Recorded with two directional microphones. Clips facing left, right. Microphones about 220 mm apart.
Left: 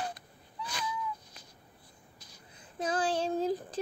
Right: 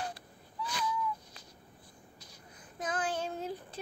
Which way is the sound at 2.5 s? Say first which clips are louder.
Left 4 dB; 30° left (ahead or behind).